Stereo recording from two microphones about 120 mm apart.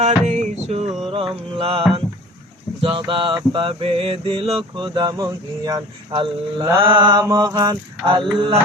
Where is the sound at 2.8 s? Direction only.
45° right (ahead or behind); by 6.8 s 25° right (ahead or behind).